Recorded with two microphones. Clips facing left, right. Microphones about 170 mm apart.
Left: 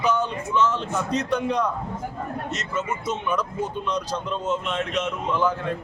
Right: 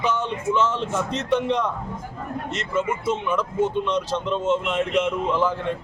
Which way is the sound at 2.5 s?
30° right (ahead or behind).